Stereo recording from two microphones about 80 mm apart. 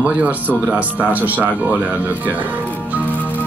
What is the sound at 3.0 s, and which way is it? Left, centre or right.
Music, left.